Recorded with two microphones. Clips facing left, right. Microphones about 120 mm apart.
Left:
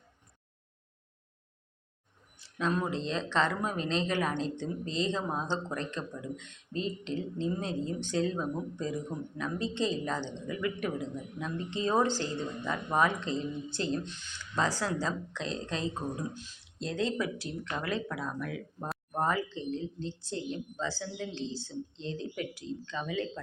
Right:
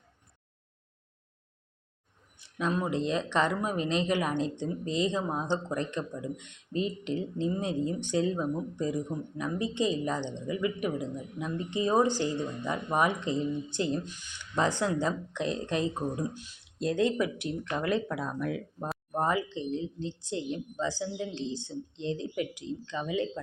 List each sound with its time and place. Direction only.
2.4 s speech: 15° right (ahead or behind)
17.3 s speech: 20° right (ahead or behind)
19.1 s speech: 15° right (ahead or behind)